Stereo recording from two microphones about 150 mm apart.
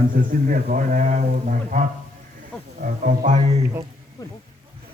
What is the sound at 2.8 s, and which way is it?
Speech, 60° right (ahead or behind).